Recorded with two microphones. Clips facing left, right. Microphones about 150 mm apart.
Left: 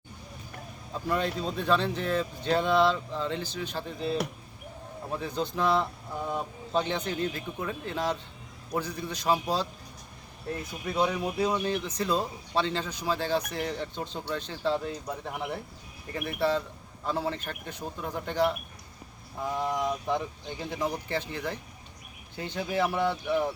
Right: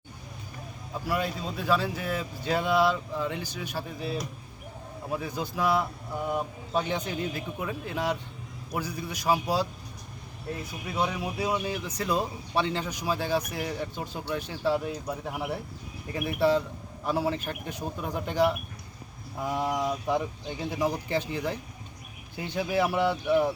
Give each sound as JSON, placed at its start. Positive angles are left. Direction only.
{"t": 1.0, "sound": "speech", "side_deg": -5}
{"t": 10.9, "sound": "speech", "side_deg": -10}